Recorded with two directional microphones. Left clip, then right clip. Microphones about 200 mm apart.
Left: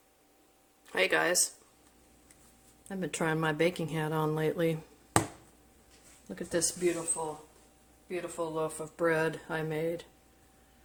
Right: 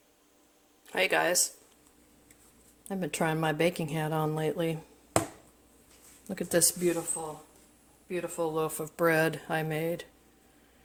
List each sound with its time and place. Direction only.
0.9 s speech: 15° right (ahead or behind)
2.9 s speech: 20° right (ahead or behind)
6.2 s speech: 50° right (ahead or behind)
8.0 s speech: 40° right (ahead or behind)